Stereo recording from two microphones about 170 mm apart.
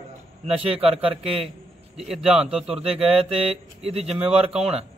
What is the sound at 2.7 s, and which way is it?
Speech, 35° right (ahead or behind).